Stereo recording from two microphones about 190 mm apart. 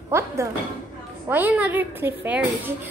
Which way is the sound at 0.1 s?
15° right (ahead or behind).